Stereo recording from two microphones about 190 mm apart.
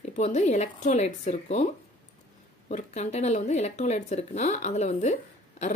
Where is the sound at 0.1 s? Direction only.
40° left (ahead or behind).